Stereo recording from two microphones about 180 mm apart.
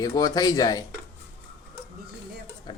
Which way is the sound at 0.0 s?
20° left (ahead or behind).